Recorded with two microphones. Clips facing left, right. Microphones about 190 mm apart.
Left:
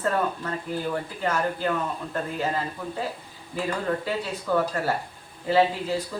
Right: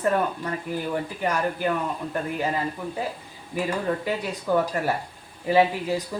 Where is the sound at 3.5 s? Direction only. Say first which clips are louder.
Right 1 dB; 15° right (ahead or behind).